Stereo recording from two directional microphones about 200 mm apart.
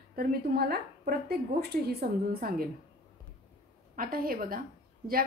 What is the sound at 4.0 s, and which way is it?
Speech, 45° right (ahead or behind).